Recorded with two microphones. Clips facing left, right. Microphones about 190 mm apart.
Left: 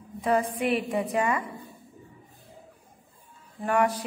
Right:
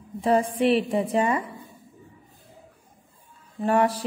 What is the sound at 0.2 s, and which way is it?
Music, 30° right (ahead or behind).